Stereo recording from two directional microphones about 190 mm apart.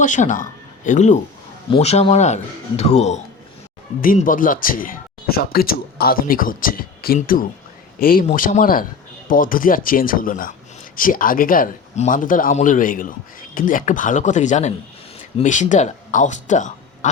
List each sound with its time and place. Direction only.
0.0 s speech: 40° left (ahead or behind)
4.0 s speech: 45° left (ahead or behind)